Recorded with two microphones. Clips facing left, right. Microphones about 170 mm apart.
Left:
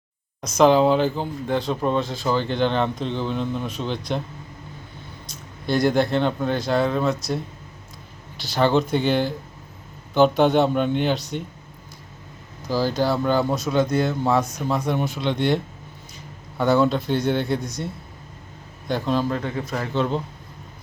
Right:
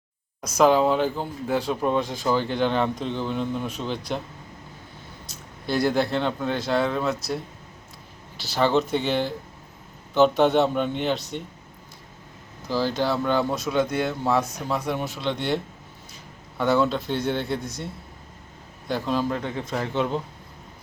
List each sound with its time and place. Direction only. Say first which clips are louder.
0.4 s speech: left 3 dB; 5° right (ahead or behind)
5.2 s speech: left 3 dB; 5° right (ahead or behind)
8.4 s speech: left 2 dB; centre (ahead or behind)
12.6 s speech: left 2 dB; centre (ahead or behind)
18.9 s speech: left 3 dB; 5° right (ahead or behind)
19.3 s speech: left 2 dB; 20° right (ahead or behind)